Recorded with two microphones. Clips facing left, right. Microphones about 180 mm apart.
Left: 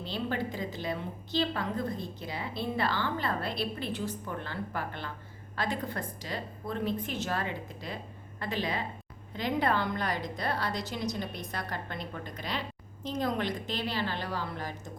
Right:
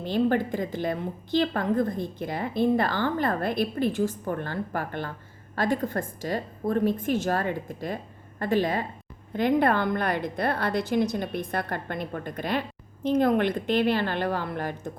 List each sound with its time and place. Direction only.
0.0 s a woman's voice: 50° right (ahead or behind)